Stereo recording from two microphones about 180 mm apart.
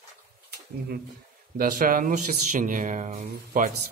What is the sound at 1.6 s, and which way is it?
A man's voice, 50° right (ahead or behind).